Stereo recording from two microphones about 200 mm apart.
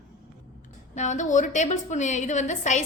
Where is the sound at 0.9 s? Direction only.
35° left (ahead or behind).